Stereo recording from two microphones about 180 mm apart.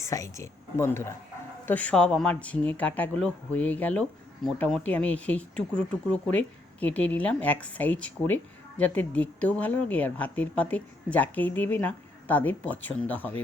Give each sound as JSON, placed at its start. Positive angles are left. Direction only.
{"t": 0.0, "sound": "speech", "side_deg": 15}